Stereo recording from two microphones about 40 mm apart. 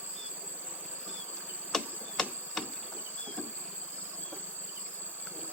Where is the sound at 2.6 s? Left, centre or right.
Centre.